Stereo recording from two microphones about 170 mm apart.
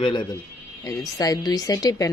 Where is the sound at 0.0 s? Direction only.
30° left (ahead or behind).